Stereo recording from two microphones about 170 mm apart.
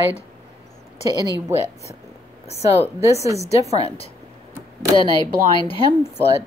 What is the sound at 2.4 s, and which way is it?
A woman's voice, 40° left (ahead or behind).